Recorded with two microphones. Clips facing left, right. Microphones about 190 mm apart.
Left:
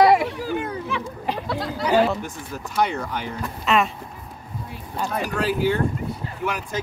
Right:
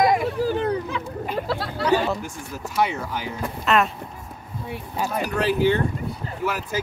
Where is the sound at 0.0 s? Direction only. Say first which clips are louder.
Left 4 dB; 75° left (ahead or behind).